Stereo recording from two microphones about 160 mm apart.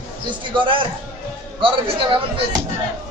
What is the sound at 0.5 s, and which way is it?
Speech, 30° right (ahead or behind).